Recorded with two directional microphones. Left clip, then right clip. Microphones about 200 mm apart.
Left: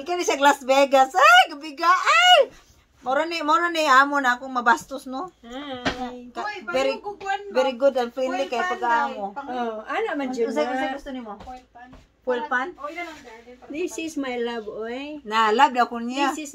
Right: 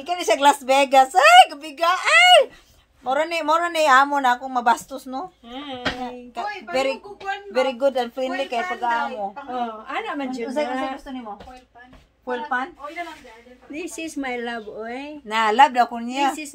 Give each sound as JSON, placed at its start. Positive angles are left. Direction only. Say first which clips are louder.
{"t": 0.0, "sound": "a woman's voice", "louder": "right 2 dB", "side_deg": -20}
{"t": 12.3, "sound": "a woman's voice", "louder": "left 1 dB", "side_deg": -10}
{"t": 13.7, "sound": "a woman's voice", "louder": "left 2 dB", "side_deg": -20}